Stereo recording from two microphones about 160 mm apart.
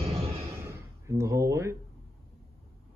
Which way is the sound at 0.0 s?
40° right (ahead or behind).